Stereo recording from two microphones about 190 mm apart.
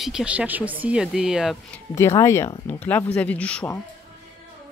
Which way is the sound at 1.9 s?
15° left (ahead or behind).